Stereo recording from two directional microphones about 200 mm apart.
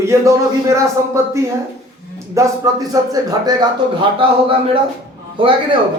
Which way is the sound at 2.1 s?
15° right (ahead or behind).